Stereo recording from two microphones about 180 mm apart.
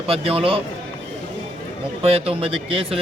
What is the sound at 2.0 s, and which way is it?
Speech, 35° right (ahead or behind).